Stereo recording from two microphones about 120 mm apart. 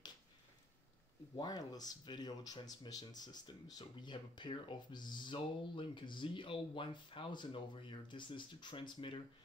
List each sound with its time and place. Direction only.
1.3 s speech: 35° left (ahead or behind)